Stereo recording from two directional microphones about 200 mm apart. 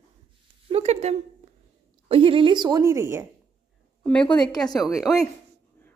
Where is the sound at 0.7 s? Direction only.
30° right (ahead or behind); by 3.3 s 15° right (ahead or behind).